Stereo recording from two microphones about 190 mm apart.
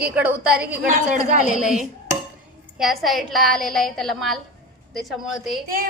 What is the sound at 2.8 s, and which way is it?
A woman's voice, centre (ahead or behind).